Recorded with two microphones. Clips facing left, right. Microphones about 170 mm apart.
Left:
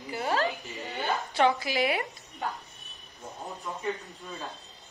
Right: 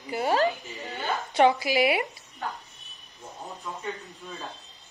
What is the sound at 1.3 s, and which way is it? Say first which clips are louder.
Speech: right 5 dB; 15° right (ahead or behind).